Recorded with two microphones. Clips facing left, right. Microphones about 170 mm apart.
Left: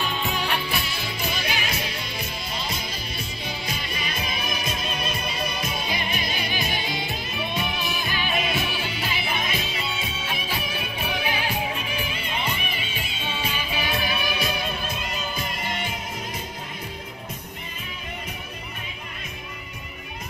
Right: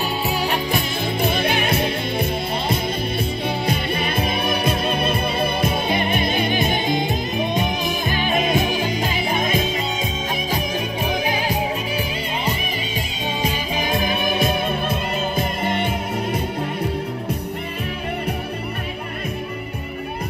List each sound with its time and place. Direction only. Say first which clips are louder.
0.0 s music: right 5 dB; 40° right (ahead or behind); by 2.2 s 55° right (ahead or behind)
3.4 s music: right 9 dB; 60° right (ahead or behind)